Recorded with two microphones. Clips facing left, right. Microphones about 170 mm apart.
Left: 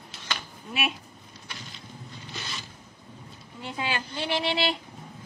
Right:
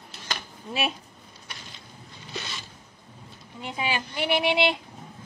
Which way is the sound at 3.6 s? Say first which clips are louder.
Right 2 dB; 15° right (ahead or behind).